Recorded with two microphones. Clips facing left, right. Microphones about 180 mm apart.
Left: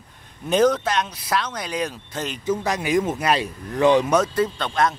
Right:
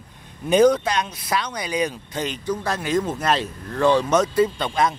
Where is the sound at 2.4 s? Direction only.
15° left (ahead or behind).